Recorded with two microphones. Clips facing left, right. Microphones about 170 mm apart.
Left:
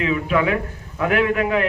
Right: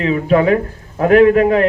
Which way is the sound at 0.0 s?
40° right (ahead or behind).